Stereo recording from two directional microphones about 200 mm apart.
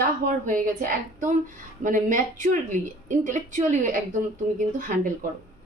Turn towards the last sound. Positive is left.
turn(degrees=-40)  # may be behind; listen again after turning